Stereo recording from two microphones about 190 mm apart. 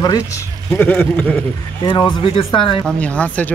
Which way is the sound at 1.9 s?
25° left (ahead or behind).